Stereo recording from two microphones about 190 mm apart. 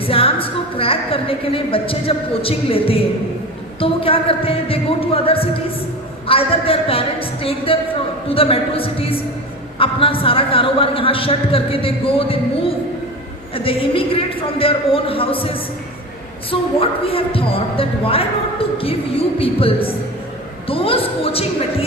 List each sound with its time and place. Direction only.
0.0 s a woman's voice: 30° left (ahead or behind)